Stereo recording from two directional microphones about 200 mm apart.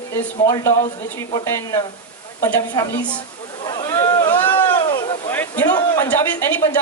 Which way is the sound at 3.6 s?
20° left (ahead or behind).